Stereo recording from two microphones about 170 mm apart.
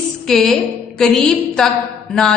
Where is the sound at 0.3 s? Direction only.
Centre (ahead or behind).